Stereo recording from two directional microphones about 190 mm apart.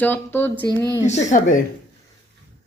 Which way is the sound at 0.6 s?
20° left (ahead or behind).